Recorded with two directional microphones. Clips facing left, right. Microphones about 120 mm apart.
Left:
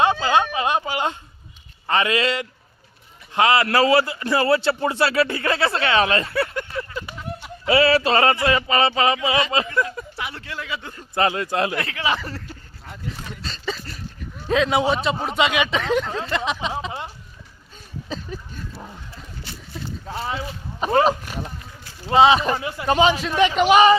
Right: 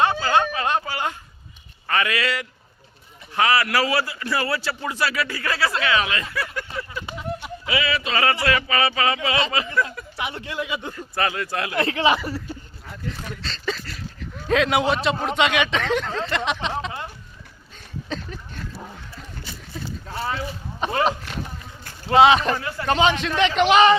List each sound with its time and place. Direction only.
0.0 s a sound: 20° left (ahead or behind)
1.9 s speech: 25° left (ahead or behind)
7.7 s speech: 35° left (ahead or behind)
10.2 s speech: 20° right (ahead or behind)
10.9 s speech: 25° left (ahead or behind)
11.8 s speech: 25° right (ahead or behind)
12.1 s speech: 10° right (ahead or behind)
13.1 s speech: 5° left (ahead or behind)
20.9 s speech: 40° left (ahead or behind)
22.1 s speech: centre (ahead or behind)
22.5 s a man's voice: 15° left (ahead or behind)